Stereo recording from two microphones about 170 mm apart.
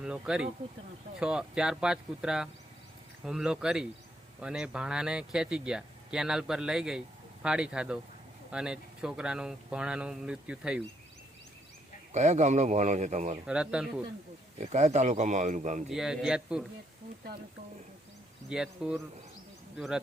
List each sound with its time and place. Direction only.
0.0 s speech: 5° right (ahead or behind)
12.1 s speech: 45° right (ahead or behind)
13.5 s speech: 5° right (ahead or behind)
14.7 s speech: 40° right (ahead or behind)
15.9 s speech: 5° right (ahead or behind)
18.4 s speech: 5° right (ahead or behind)